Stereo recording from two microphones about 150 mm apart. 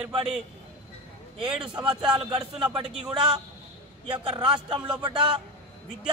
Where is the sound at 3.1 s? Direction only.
30° right (ahead or behind).